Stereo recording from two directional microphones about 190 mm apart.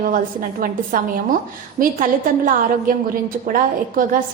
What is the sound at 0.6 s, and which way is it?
A woman's voice, 45° right (ahead or behind).